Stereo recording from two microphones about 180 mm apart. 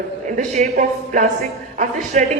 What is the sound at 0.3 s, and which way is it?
Speech, 45° right (ahead or behind).